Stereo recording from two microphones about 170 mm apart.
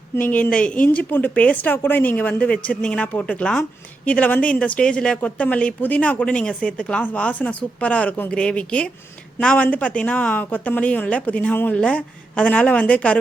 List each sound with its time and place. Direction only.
0.2 s a woman's voice: 10° left (ahead or behind)